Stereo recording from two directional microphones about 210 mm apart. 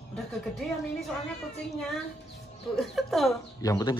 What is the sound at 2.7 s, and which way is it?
Speech, centre (ahead or behind).